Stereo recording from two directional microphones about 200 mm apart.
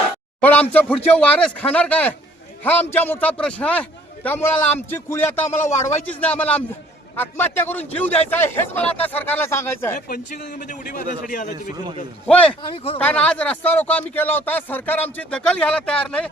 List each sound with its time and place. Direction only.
0.4 s speech: 5° left (ahead or behind)
10.1 s a man's voice: 40° left (ahead or behind)
12.3 s speech: 5° left (ahead or behind)
12.7 s speech: 25° left (ahead or behind)
13.0 s speech: 5° left (ahead or behind)